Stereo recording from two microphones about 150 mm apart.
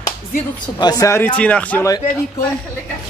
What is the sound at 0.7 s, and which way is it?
Speech, 25° left (ahead or behind).